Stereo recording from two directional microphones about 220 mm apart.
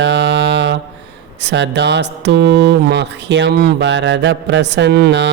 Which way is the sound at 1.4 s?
50° right (ahead or behind).